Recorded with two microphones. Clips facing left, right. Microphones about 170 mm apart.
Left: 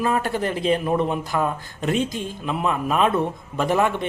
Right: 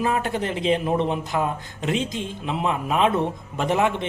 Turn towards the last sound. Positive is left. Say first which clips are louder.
# left 1 dB
turn(degrees=-20)  # may be behind; listen again after turning